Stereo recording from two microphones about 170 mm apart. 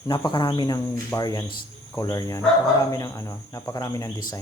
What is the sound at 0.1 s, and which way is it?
Speech, 25° left (ahead or behind).